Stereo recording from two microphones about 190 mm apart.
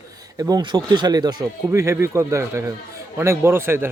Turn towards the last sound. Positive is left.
turn(degrees=-10)  # may be behind; listen again after turning